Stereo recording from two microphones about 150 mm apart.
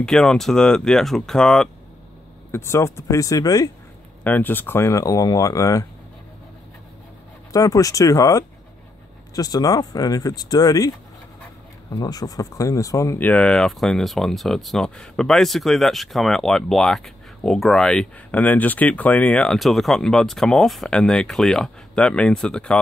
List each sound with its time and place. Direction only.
0.0 s speech: 5° left (ahead or behind)
2.5 s speech: 15° left (ahead or behind)
4.2 s speech: 10° left (ahead or behind)
7.5 s speech: 25° left (ahead or behind)
11.9 s speech: 25° left (ahead or behind); by 22.8 s 5° left (ahead or behind)